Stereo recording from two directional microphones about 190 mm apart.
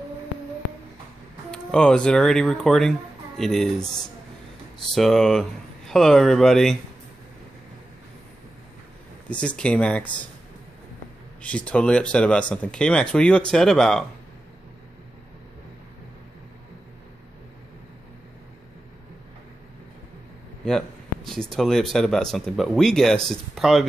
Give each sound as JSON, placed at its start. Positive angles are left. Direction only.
{"t": 1.5, "sound": "speech", "side_deg": 5}
{"t": 4.9, "sound": "speech", "side_deg": 0}
{"t": 9.3, "sound": "speech", "side_deg": 5}
{"t": 11.4, "sound": "speech", "side_deg": 5}
{"t": 20.6, "sound": "speech", "side_deg": 0}